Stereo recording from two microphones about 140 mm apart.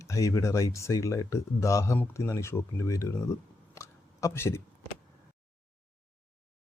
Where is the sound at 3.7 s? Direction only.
20° left (ahead or behind).